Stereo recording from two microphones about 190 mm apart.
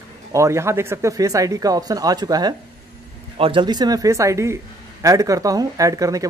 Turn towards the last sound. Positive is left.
turn(degrees=-15)  # may be behind; listen again after turning